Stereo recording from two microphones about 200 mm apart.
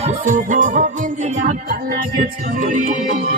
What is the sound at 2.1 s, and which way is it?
Music, 40° right (ahead or behind).